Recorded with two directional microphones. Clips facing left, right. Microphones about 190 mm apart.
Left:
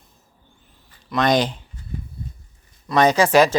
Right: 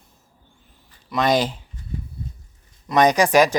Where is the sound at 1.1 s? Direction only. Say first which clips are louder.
Left 1 dB; 5° right (ahead or behind).